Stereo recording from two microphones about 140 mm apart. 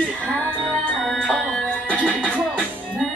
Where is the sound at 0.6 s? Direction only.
Centre (ahead or behind).